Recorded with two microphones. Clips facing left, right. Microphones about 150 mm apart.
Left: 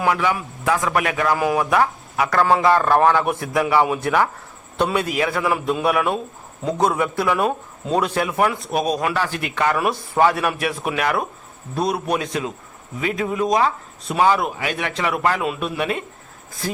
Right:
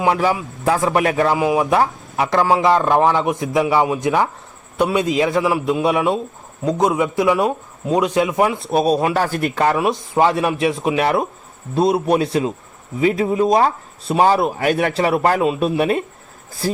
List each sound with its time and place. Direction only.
0.1 s speech: 35° right (ahead or behind)
1.4 s a man's voice: 15° right (ahead or behind)
1.7 s a man's voice: 30° right (ahead or behind); by 5.0 s 10° right (ahead or behind)
5.0 s speech: 25° right (ahead or behind)
5.5 s a man's voice: 10° right (ahead or behind)
5.8 s a man's voice: 20° right (ahead or behind)
8.7 s speech: 30° right (ahead or behind)
9.2 s speech: 40° right (ahead or behind)
9.7 s speech: 15° right (ahead or behind); by 16.8 s 35° right (ahead or behind)